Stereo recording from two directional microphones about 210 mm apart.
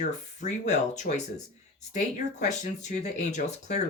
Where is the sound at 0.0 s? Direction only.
35° left (ahead or behind).